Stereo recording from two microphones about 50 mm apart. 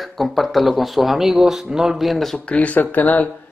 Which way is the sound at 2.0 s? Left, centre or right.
Centre.